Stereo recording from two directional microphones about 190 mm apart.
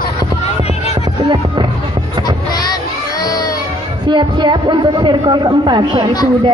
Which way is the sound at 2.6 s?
20° left (ahead or behind).